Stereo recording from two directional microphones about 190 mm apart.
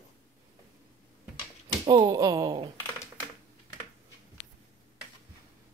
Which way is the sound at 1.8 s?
20° right (ahead or behind).